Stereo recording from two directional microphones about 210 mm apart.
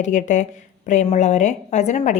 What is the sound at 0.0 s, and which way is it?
A woman's voice, 35° left (ahead or behind).